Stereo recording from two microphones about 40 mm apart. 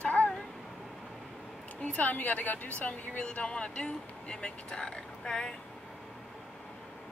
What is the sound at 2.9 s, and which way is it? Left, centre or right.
Speech, left.